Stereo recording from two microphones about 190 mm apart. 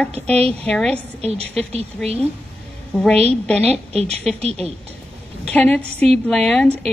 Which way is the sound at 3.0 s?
5° left (ahead or behind).